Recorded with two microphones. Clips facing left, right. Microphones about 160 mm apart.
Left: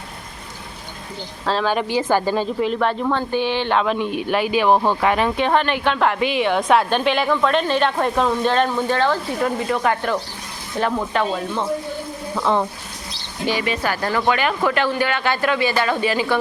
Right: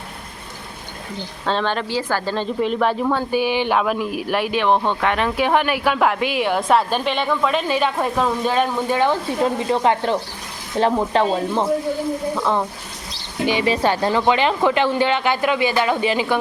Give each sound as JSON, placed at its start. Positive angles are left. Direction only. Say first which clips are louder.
{"t": 1.5, "sound": "speech", "louder": "left 1 dB", "side_deg": 0}
{"t": 1.7, "sound": "speech", "louder": "left 4 dB", "side_deg": 15}
{"t": 12.4, "sound": "speech", "louder": "left 4 dB", "side_deg": 0}
{"t": 13.5, "sound": "speech", "louder": "right 3 dB", "side_deg": -25}